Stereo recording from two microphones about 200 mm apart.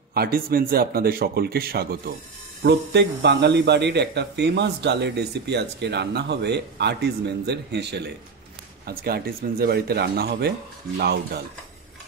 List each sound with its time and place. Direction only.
0.1 s a man's voice: 50° right (ahead or behind)